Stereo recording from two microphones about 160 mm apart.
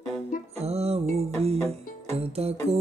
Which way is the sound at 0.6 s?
40° right (ahead or behind).